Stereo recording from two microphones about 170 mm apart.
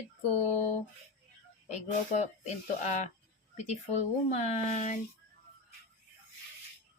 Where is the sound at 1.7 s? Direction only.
40° left (ahead or behind).